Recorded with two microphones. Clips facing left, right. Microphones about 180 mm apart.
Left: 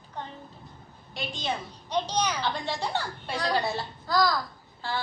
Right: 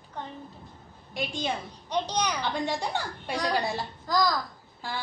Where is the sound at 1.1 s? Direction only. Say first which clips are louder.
Right 2 dB; 10° right (ahead or behind).